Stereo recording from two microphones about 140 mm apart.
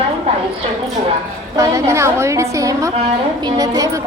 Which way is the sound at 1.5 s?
25° right (ahead or behind).